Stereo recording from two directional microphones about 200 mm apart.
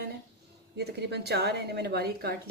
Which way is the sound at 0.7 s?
55° right (ahead or behind).